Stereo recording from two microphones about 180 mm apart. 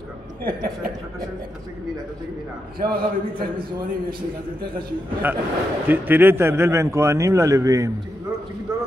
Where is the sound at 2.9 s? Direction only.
55° right (ahead or behind).